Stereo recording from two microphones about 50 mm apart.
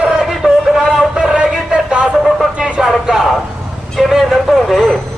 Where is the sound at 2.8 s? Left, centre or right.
Centre.